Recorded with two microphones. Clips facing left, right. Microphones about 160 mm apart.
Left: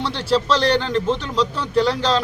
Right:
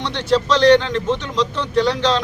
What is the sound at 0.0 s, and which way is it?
Speech, 10° left (ahead or behind).